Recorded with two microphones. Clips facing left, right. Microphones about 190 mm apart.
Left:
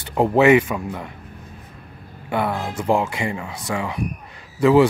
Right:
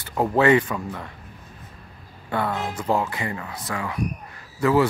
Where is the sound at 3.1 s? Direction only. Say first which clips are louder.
Left 4 dB; 15° left (ahead or behind).